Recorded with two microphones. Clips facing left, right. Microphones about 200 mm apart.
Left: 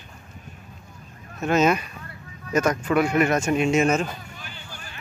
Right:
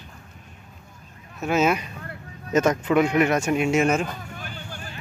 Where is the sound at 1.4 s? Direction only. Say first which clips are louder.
Left 1 dB; 5° right (ahead or behind).